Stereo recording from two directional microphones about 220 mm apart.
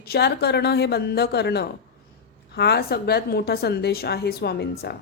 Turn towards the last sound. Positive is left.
turn(degrees=45)  # may be behind; listen again after turning